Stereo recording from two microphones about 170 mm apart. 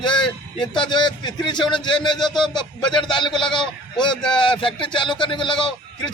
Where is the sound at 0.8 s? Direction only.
25° left (ahead or behind).